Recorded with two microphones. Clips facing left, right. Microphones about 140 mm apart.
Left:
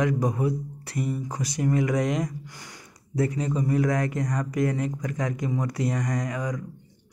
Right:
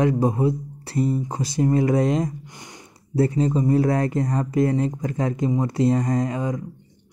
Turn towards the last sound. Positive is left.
turn(degrees=-25)  # may be behind; listen again after turning